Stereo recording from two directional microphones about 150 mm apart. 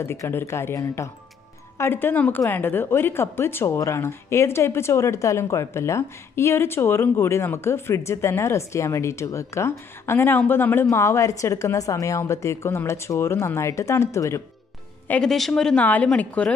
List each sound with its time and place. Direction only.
0.0 s a woman's voice: 15° left (ahead or behind)
15.0 s a woman's voice: 5° left (ahead or behind)